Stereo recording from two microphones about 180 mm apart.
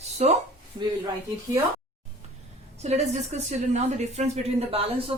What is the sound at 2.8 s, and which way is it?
A woman's voice, 35° right (ahead or behind).